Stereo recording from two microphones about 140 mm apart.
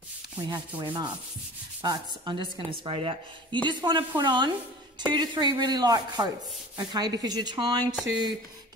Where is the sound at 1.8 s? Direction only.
30° right (ahead or behind).